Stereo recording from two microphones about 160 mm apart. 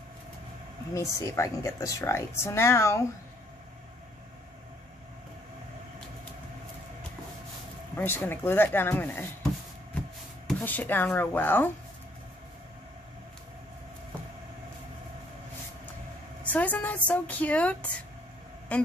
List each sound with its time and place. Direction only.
0.9 s speech: 20° left (ahead or behind)
7.9 s speech: 10° left (ahead or behind)
10.6 s speech: 10° left (ahead or behind)
16.4 s a woman's voice: 10° left (ahead or behind)